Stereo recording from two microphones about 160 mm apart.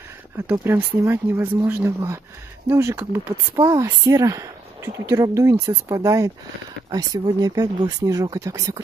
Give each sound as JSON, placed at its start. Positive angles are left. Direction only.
{"t": 0.5, "sound": "speech", "side_deg": -15}